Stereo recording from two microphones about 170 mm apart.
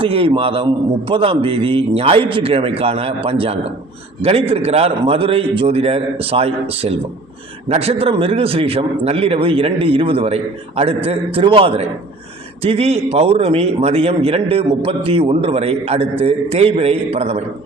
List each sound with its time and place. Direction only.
0.0 s a man's voice: 30° right (ahead or behind)